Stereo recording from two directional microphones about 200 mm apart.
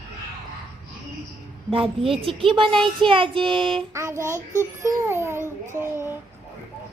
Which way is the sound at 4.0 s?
15° right (ahead or behind).